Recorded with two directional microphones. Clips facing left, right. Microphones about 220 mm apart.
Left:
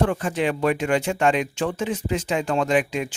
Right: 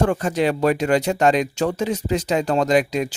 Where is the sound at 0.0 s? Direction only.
40° right (ahead or behind).